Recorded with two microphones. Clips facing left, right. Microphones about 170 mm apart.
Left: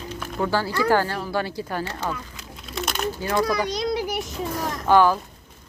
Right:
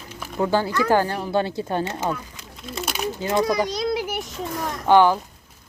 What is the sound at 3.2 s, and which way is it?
Child singing, 20° right (ahead or behind).